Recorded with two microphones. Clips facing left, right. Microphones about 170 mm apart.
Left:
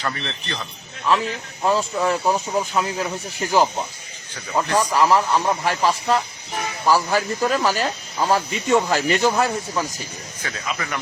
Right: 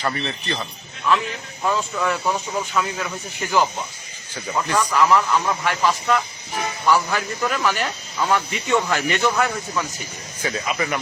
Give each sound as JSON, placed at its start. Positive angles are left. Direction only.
{"t": 0.0, "sound": "speech", "side_deg": -10}
{"t": 1.0, "sound": "speech", "side_deg": 30}
{"t": 4.7, "sound": "speech", "side_deg": 35}
{"t": 10.4, "sound": "speech", "side_deg": -15}